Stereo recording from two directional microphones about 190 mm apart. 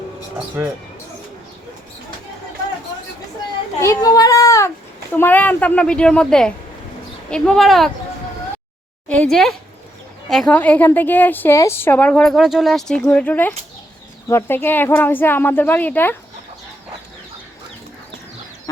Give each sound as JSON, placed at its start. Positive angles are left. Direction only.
{"t": 3.8, "sound": "a woman's voice", "side_deg": 15}
{"t": 9.0, "sound": "a woman's voice", "side_deg": 5}